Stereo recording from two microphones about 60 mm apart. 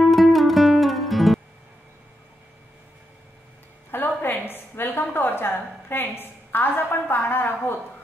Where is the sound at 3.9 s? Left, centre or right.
Left.